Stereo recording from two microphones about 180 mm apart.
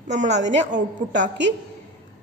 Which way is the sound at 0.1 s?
40° right (ahead or behind).